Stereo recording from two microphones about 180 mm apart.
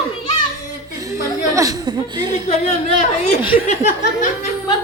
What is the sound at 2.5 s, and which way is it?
A woman's voice, 40° left (ahead or behind).